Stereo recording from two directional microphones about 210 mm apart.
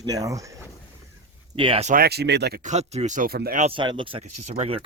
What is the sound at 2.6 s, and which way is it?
Speech, 30° right (ahead or behind).